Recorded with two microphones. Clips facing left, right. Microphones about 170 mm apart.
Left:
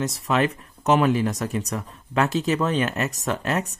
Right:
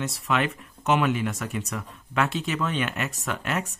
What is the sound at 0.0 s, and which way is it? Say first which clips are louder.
Speech: left 4 dB; 40° left (ahead or behind).